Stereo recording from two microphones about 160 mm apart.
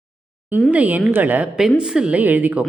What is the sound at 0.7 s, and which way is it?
A woman's voice, 10° right (ahead or behind).